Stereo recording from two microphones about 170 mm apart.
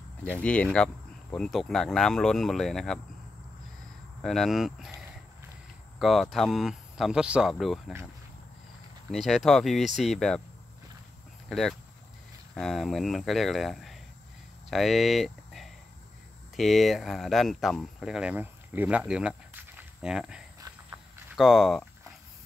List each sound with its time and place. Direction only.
0.4 s speech: 5° left (ahead or behind)
4.2 s speech: centre (ahead or behind)
5.9 s speech: centre (ahead or behind)
9.1 s speech: centre (ahead or behind)
11.4 s speech: centre (ahead or behind)
20.6 s a sound: 25° right (ahead or behind)
21.4 s speech: centre (ahead or behind)